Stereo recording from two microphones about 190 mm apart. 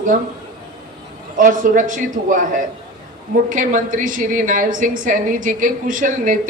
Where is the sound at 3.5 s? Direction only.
40° right (ahead or behind).